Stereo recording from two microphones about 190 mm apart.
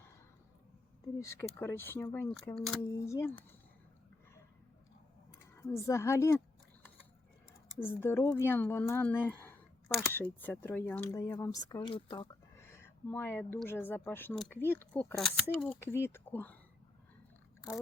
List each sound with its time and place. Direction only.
1.2 s speech: 15° left (ahead or behind)
5.5 s speech: 15° left (ahead or behind)
7.8 s speech: 10° left (ahead or behind)
12.5 s speech: 10° left (ahead or behind)
15.8 s speech: 10° left (ahead or behind)